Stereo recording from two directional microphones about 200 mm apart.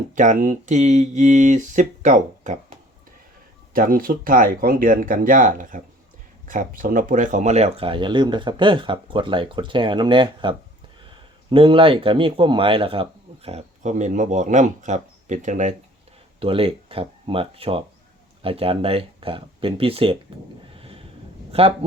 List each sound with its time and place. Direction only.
0.2 s speech: 40° right (ahead or behind)
20.7 s a sound: 30° right (ahead or behind)
21.5 s speech: 30° right (ahead or behind)